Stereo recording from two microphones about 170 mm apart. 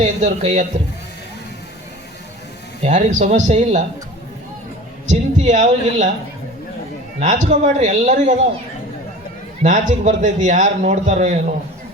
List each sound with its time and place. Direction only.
0.0 s a man's voice: 45° right (ahead or behind)
2.8 s a man's voice: 45° right (ahead or behind)
5.0 s a man's voice: 45° right (ahead or behind)
7.2 s a man's voice: 45° right (ahead or behind)
9.6 s a man's voice: 45° right (ahead or behind)